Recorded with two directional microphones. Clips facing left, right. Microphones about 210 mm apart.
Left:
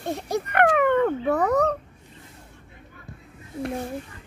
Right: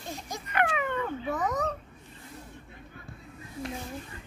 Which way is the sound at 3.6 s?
60° left (ahead or behind).